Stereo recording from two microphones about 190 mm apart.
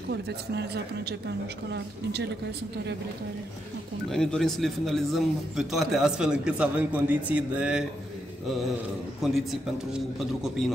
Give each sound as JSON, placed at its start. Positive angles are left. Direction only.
{"t": 0.1, "sound": "speech", "side_deg": -60}
{"t": 4.1, "sound": "a man's voice", "side_deg": 5}
{"t": 9.2, "sound": "a man's voice", "side_deg": 0}